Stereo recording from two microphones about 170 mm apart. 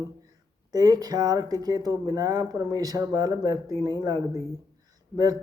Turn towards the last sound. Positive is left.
turn(degrees=-20)  # may be behind; listen again after turning